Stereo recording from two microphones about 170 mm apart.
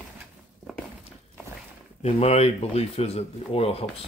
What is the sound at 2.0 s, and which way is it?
Speech, 35° left (ahead or behind).